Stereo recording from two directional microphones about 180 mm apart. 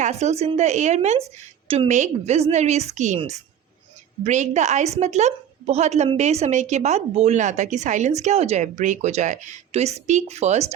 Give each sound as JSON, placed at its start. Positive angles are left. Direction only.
{"t": 0.0, "sound": "a woman's voice", "side_deg": -40}